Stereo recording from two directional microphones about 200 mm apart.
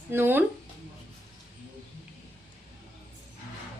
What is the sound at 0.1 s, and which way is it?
Speech, 10° right (ahead or behind).